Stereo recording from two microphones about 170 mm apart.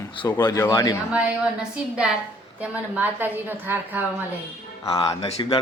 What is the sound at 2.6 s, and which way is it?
A woman's voice, 10° right (ahead or behind).